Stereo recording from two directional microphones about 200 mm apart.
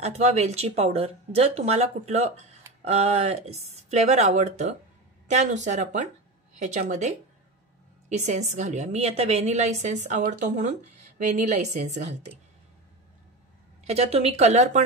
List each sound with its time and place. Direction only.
0.0 s a woman's voice: 35° right (ahead or behind)
13.8 s a woman's voice: 30° right (ahead or behind)